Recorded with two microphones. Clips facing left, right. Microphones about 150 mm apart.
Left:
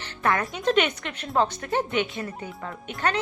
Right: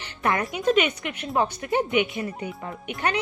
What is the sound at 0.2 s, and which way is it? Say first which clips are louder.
A woman's voice: even; 15° right (ahead or behind).